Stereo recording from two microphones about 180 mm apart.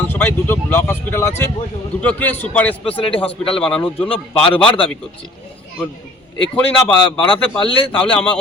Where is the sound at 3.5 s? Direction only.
5° left (ahead or behind).